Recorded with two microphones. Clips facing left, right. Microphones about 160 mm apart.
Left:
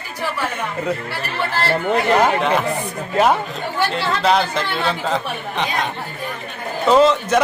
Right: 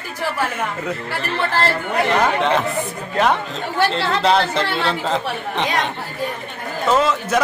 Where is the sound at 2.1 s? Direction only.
5° left (ahead or behind).